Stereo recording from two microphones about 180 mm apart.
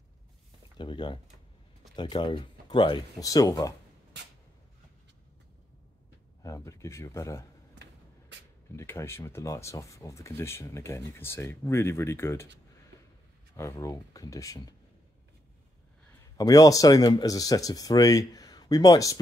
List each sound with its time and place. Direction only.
0.7 s speech: 25° left (ahead or behind)
6.4 s speech: 20° left (ahead or behind)
8.7 s speech: 15° left (ahead or behind)
13.6 s speech: 15° left (ahead or behind)
16.3 s speech: 20° left (ahead or behind)